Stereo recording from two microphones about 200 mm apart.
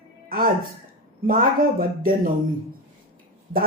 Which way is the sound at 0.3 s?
45° right (ahead or behind).